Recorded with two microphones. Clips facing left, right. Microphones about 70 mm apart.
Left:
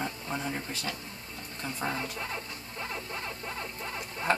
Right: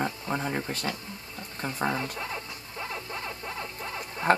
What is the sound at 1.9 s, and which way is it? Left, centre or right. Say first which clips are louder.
Speech: right 3 dB; centre.